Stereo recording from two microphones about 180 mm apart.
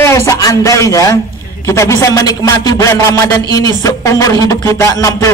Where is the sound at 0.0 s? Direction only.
15° left (ahead or behind).